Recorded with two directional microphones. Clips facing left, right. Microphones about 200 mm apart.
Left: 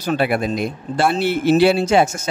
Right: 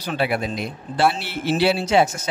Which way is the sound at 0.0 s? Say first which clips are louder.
Left 4 dB; 50° left (ahead or behind).